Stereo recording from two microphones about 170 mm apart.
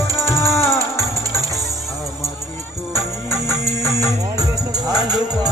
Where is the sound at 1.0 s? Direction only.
20° right (ahead or behind).